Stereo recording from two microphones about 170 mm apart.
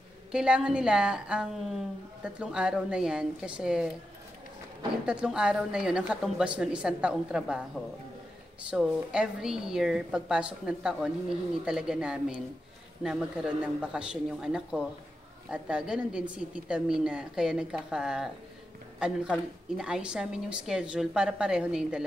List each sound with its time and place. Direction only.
0.3 s a woman's voice: 5° right (ahead or behind)
5.0 s a woman's voice: 5° right (ahead or behind)
8.6 s a woman's voice: 5° right (ahead or behind)